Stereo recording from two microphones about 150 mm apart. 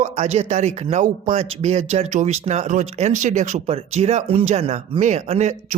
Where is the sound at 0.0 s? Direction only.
45° right (ahead or behind).